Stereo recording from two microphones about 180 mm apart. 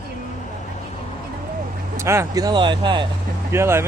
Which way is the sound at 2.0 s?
15° right (ahead or behind).